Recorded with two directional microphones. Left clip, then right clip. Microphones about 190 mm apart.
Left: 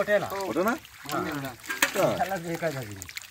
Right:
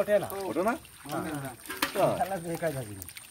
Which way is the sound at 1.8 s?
40° left (ahead or behind).